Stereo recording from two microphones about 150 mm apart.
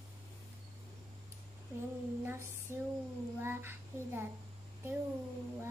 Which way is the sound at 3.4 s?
15° right (ahead or behind).